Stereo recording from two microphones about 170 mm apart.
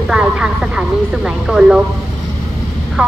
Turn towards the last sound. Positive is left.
turn(degrees=-5)  # may be behind; listen again after turning